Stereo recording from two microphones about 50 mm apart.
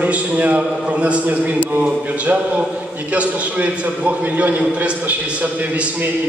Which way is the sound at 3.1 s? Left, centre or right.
Right.